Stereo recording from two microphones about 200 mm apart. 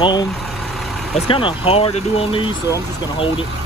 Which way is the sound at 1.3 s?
25° left (ahead or behind).